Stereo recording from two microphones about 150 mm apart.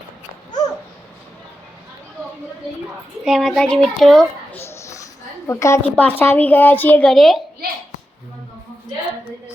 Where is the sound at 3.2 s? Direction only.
Centre (ahead or behind).